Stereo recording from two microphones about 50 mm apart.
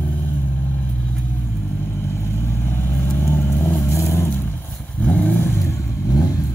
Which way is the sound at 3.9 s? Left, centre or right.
Left.